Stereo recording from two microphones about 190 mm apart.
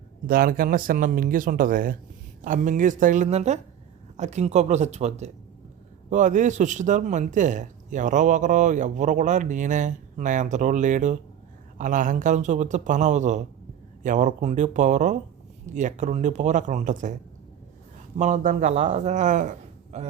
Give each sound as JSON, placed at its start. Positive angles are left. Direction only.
{"t": 0.3, "sound": "speech", "side_deg": -50}
{"t": 18.2, "sound": "speech", "side_deg": -40}